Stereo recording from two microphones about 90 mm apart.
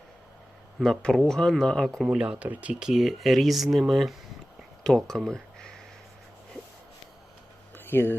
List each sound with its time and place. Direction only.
0.8 s speech: 5° left (ahead or behind)
2.0 s speech: 10° right (ahead or behind); by 5.7 s 5° left (ahead or behind)
7.8 s a sound: 25° left (ahead or behind)